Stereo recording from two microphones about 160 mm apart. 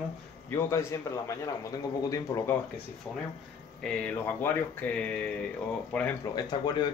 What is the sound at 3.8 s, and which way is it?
Speech, 10° left (ahead or behind).